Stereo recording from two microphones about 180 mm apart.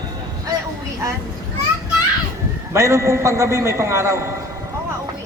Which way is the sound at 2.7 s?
15° right (ahead or behind).